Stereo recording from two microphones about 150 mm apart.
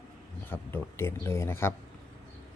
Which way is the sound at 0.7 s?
15° left (ahead or behind).